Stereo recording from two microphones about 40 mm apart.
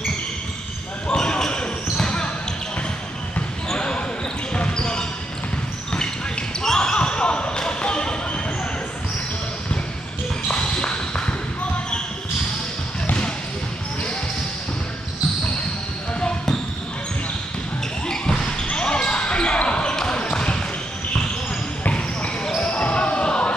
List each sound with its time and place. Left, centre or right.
1.0 s basketball bounce: left
3.7 s basketball bounce: left
6.6 s basketball bounce: centre
10.5 s a sound: left
16.2 s basketball bounce: centre
18.0 s basketball bounce: left
21.8 s basketball bounce: left